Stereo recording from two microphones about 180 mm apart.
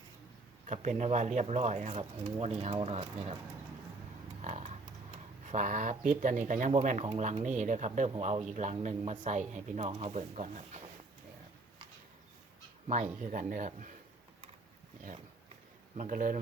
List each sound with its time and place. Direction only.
0.7 s speech: 40° right (ahead or behind)
4.4 s a sound: 40° right (ahead or behind)
5.5 s speech: 45° right (ahead or behind)
12.9 s speech: 45° right (ahead or behind)
16.0 s speech: 45° right (ahead or behind)